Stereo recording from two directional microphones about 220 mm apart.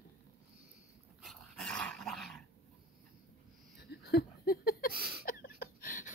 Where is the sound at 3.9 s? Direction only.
50° left (ahead or behind).